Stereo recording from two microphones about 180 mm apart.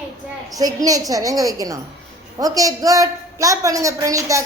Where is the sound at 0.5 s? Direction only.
20° right (ahead or behind).